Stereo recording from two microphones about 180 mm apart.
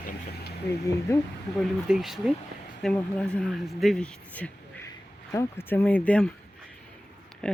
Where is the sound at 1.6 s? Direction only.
Centre (ahead or behind).